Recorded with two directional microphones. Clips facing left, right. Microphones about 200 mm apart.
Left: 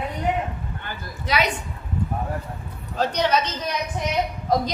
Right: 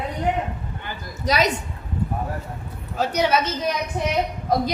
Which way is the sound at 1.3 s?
40° right (ahead or behind).